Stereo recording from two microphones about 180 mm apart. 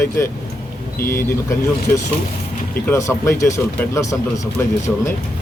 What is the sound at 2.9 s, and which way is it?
Speech, 15° left (ahead or behind).